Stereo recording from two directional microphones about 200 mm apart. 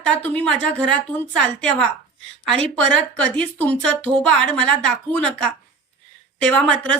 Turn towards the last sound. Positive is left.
turn(degrees=5)  # may be behind; listen again after turning